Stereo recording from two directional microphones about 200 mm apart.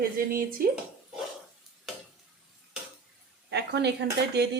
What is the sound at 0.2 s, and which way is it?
Speech, 45° right (ahead or behind).